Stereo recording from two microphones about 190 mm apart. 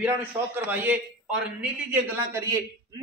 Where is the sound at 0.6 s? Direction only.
10° right (ahead or behind).